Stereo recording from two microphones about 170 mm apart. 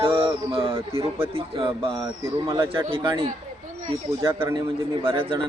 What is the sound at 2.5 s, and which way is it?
Speech, 15° right (ahead or behind).